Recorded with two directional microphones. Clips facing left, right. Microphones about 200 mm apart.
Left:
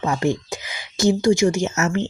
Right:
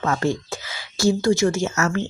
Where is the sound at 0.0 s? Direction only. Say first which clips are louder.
Left 1 dB; 15° left (ahead or behind).